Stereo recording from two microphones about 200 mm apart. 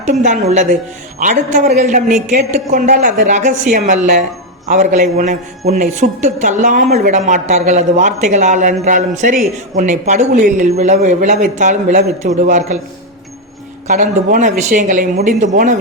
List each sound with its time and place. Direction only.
0.0 s a woman's voice: 35° right (ahead or behind)
13.8 s a woman's voice: 40° right (ahead or behind)